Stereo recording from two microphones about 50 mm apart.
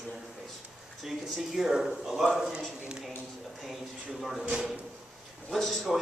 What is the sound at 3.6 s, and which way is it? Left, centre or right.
Speech, centre.